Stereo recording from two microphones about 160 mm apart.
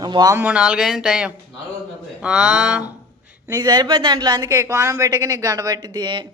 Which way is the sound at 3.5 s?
25° right (ahead or behind).